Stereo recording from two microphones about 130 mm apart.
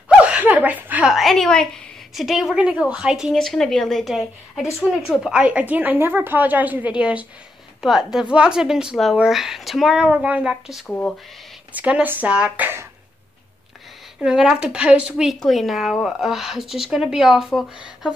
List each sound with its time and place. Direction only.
0.2 s a woman's voice: 10° right (ahead or behind)
10.9 s speech: 10° left (ahead or behind)
11.7 s a woman's voice: 10° right (ahead or behind)
14.2 s speech: 5° right (ahead or behind)